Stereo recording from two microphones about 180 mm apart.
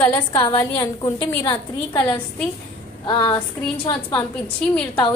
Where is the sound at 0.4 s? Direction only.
25° left (ahead or behind).